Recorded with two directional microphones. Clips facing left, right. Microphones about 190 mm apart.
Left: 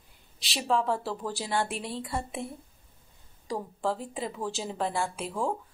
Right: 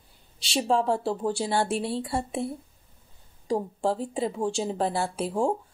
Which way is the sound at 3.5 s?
30° right (ahead or behind).